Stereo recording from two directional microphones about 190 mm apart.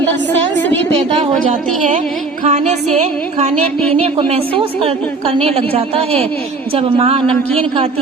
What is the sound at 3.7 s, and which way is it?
Speech, 5° left (ahead or behind).